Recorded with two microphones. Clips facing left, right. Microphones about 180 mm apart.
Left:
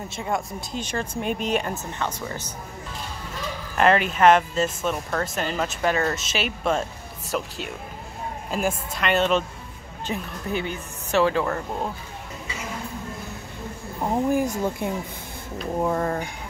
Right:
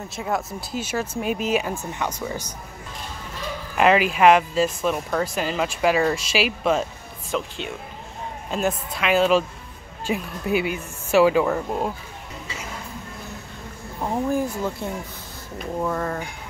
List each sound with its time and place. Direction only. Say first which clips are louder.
0.1 s speech: right 2 dB; 5° right (ahead or behind)
3.7 s a woman's voice: right 2 dB; 5° right (ahead or behind)
14.0 s speech: left 1 dB; 15° left (ahead or behind)